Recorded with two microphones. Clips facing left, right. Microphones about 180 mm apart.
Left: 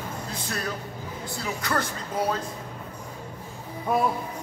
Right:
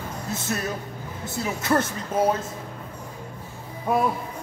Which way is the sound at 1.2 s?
25° right (ahead or behind).